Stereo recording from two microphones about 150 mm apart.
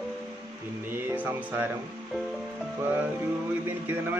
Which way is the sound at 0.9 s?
15° right (ahead or behind).